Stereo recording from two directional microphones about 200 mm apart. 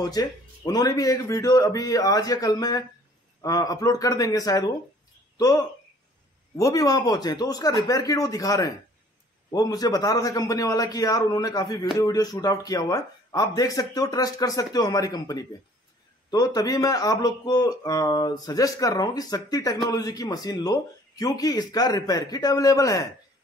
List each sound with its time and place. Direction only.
0.0 s speech: 20° left (ahead or behind)
6.5 s speech: 15° left (ahead or behind)